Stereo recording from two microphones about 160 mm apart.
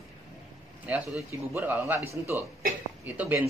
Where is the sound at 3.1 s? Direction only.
10° right (ahead or behind).